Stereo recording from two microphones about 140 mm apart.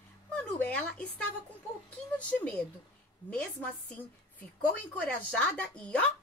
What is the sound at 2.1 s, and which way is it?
A woman's voice, 10° left (ahead or behind).